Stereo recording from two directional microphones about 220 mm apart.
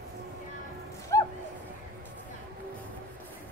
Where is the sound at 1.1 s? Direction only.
15° left (ahead or behind).